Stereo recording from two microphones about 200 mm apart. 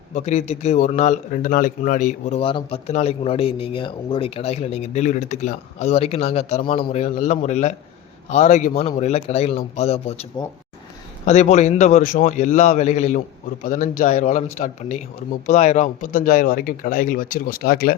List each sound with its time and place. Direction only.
0.1 s speech: 35° left (ahead or behind)